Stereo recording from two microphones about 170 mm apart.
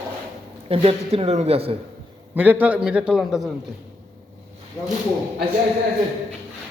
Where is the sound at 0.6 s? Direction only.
35° right (ahead or behind).